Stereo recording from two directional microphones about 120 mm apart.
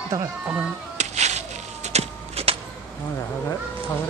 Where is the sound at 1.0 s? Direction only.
70° right (ahead or behind).